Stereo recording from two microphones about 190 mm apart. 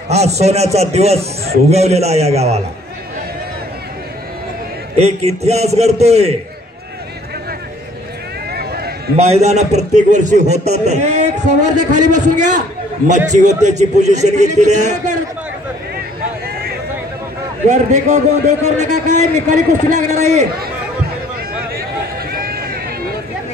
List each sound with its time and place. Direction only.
0.1 s a man's voice: 35° right (ahead or behind)
4.9 s a man's voice: 35° right (ahead or behind)
8.5 s run: 55° right (ahead or behind)
9.1 s a man's voice: 35° right (ahead or behind)
17.6 s a man's voice: 40° right (ahead or behind)
22.3 s run: 50° right (ahead or behind)